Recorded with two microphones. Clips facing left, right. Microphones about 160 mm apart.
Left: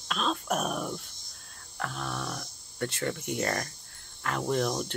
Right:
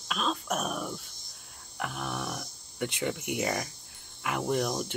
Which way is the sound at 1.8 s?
15° right (ahead or behind).